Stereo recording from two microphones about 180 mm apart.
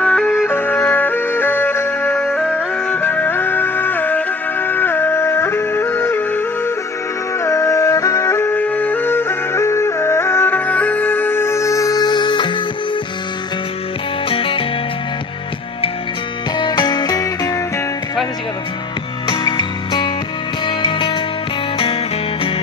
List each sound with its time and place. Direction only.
0.0 s music: 5° left (ahead or behind); by 12.5 s 25° left (ahead or behind)
14.3 s music: 30° left (ahead or behind)
16.5 s music: 25° left (ahead or behind)
19.2 s music: 25° left (ahead or behind)